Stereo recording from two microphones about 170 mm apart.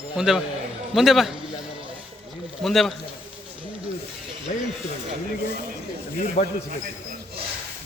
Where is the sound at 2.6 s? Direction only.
Centre (ahead or behind).